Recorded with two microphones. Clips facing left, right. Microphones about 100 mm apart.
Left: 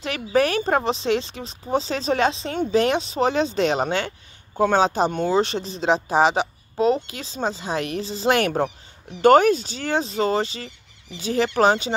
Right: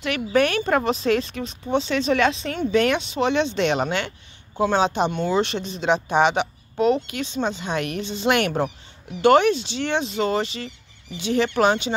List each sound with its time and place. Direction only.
0.0 s speech: 35° left (ahead or behind)